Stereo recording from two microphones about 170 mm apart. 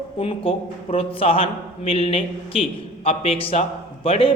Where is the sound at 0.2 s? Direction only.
35° left (ahead or behind).